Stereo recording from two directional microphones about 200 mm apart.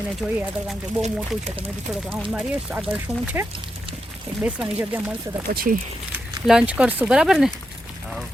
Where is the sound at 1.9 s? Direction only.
Centre (ahead or behind).